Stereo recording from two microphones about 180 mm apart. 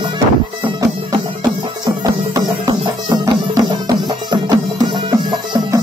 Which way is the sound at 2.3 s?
20° right (ahead or behind).